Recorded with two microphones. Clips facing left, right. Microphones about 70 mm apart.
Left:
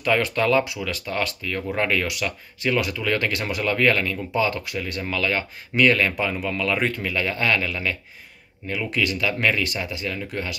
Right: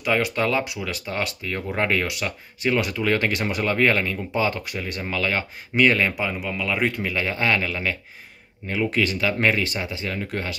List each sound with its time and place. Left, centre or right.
0.0 s speech: centre
6.1 s speech: centre
7.1 s speech: right